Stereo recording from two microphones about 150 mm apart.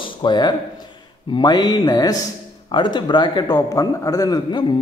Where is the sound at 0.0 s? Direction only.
30° left (ahead or behind).